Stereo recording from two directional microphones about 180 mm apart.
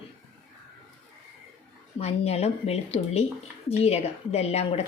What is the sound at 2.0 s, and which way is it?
Speech, 35° left (ahead or behind).